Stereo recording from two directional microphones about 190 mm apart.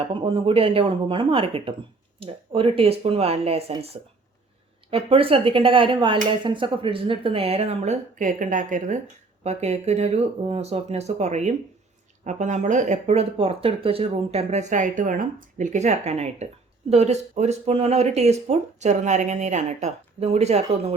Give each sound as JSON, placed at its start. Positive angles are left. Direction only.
{"t": 0.1, "sound": "speech", "side_deg": -25}